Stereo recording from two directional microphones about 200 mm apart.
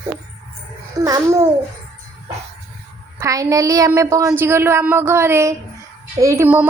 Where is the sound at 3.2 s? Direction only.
15° right (ahead or behind).